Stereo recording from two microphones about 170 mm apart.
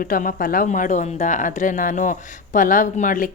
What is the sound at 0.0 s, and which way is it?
Speech, 50° left (ahead or behind).